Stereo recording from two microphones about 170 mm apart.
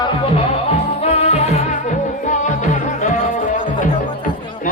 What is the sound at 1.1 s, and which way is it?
Music, 40° left (ahead or behind).